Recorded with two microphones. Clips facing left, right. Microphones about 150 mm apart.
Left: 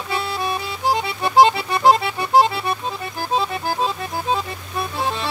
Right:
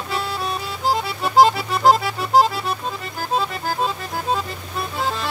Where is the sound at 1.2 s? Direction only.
Centre (ahead or behind).